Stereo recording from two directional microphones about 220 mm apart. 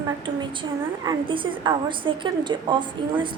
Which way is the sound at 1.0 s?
20° right (ahead or behind).